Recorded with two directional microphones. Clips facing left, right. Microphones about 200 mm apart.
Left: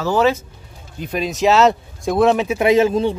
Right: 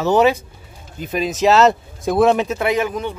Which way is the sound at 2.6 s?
25° left (ahead or behind).